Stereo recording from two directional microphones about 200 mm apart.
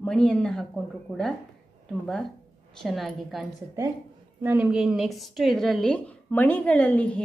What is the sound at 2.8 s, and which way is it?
A woman's voice, centre (ahead or behind).